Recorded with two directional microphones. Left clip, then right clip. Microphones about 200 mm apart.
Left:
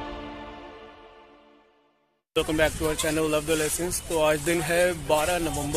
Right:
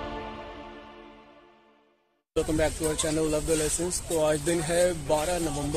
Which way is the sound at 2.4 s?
5° left (ahead or behind).